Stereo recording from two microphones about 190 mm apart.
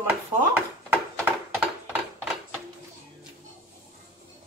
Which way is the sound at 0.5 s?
10° right (ahead or behind).